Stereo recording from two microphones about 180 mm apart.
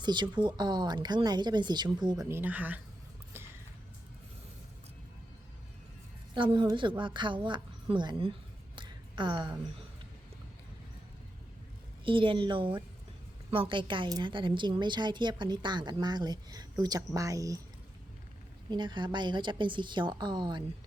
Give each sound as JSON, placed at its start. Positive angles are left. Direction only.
{"t": 0.0, "sound": "a woman's voice", "side_deg": -25}
{"t": 6.3, "sound": "a woman's voice", "side_deg": -25}
{"t": 12.0, "sound": "a woman's voice", "side_deg": -30}
{"t": 18.7, "sound": "a woman's voice", "side_deg": -25}